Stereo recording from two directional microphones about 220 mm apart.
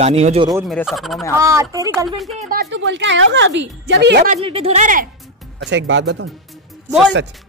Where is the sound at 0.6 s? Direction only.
Centre (ahead or behind).